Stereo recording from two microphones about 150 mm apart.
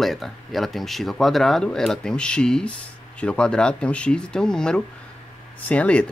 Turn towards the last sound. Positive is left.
turn(degrees=10)  # may be behind; listen again after turning